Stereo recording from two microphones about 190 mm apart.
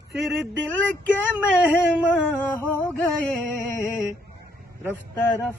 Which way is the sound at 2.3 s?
10° left (ahead or behind).